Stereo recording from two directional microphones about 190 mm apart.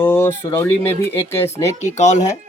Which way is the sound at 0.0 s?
10° left (ahead or behind).